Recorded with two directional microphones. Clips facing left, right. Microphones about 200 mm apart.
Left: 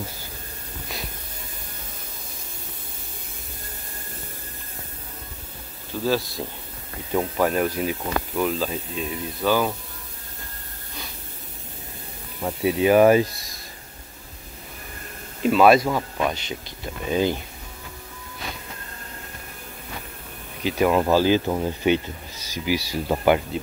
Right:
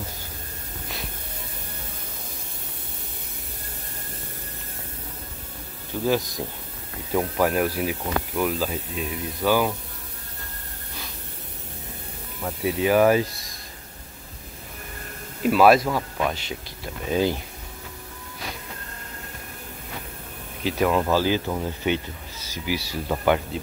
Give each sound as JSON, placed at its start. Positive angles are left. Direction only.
{"t": 6.0, "sound": "speech", "side_deg": -20}
{"t": 7.2, "sound": "speech", "side_deg": -5}
{"t": 12.4, "sound": "speech", "side_deg": 20}
{"t": 15.4, "sound": "speech", "side_deg": -5}
{"t": 20.6, "sound": "speech", "side_deg": 0}
{"t": 20.9, "sound": "speech", "side_deg": 15}